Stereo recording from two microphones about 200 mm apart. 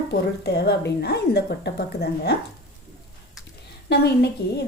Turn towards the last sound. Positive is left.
turn(degrees=55)  # may be behind; listen again after turning